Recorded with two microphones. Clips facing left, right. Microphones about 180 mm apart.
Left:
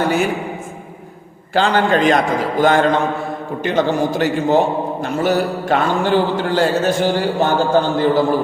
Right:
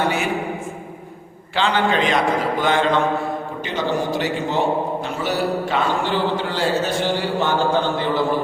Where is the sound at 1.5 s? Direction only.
45° left (ahead or behind).